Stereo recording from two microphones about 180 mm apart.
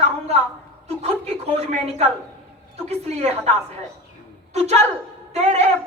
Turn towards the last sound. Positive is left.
turn(degrees=-35)  # may be behind; listen again after turning